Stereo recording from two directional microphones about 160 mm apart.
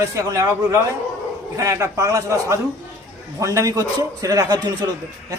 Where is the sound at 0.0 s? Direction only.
20° right (ahead or behind).